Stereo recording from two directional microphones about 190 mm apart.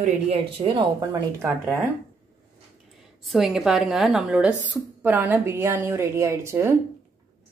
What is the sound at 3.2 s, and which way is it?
Speech, centre (ahead or behind).